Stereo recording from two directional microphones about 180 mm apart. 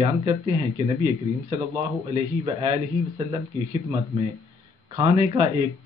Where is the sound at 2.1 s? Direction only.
25° right (ahead or behind).